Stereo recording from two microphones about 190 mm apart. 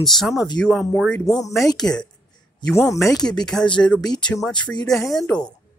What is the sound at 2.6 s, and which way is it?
Speech, 15° left (ahead or behind).